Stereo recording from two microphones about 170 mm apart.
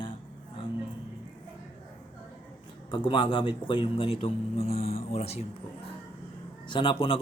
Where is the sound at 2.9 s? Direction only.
30° left (ahead or behind).